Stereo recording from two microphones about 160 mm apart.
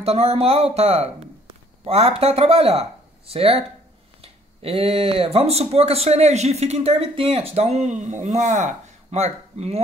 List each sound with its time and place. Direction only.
0.0 s speech: 40° right (ahead or behind)